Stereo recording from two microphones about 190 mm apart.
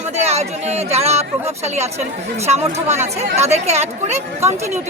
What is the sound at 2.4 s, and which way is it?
Speech, 35° right (ahead or behind).